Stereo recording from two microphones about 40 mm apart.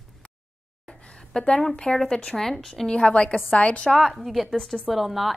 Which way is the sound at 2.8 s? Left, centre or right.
Left.